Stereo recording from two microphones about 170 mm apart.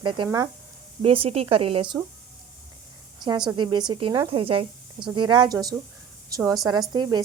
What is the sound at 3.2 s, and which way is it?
Speech, 25° right (ahead or behind).